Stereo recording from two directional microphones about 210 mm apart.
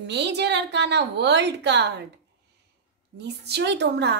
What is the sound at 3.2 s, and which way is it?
A woman's voice, 50° right (ahead or behind).